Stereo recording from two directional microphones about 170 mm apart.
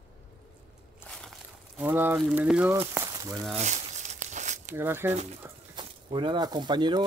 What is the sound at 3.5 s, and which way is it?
Crumpling, 45° right (ahead or behind).